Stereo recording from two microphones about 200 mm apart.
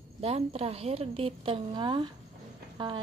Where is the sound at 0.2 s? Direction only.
30° right (ahead or behind).